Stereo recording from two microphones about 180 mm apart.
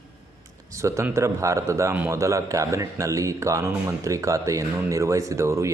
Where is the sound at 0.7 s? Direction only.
15° right (ahead or behind).